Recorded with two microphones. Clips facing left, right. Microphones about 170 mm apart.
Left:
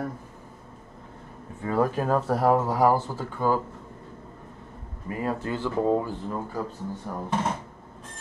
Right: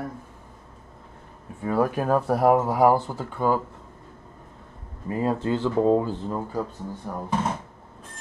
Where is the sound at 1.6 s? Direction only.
10° right (ahead or behind).